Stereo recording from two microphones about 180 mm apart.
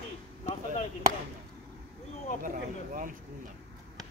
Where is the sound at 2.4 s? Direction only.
50° right (ahead or behind).